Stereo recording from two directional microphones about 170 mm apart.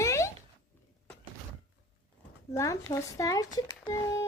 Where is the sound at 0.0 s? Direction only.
15° left (ahead or behind).